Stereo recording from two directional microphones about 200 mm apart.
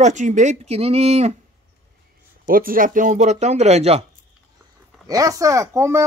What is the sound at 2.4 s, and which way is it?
Speech, 45° right (ahead or behind).